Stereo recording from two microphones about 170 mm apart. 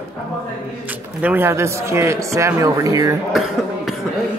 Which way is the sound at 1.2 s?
15° right (ahead or behind).